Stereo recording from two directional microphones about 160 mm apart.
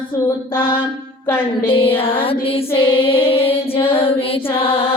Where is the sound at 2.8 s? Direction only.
35° left (ahead or behind).